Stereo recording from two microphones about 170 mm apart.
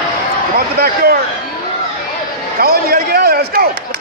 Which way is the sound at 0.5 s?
65° right (ahead or behind).